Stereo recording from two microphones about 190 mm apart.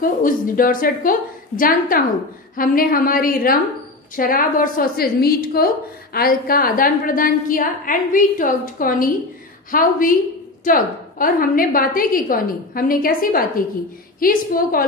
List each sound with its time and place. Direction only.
0.0 s a woman's voice: 45° left (ahead or behind)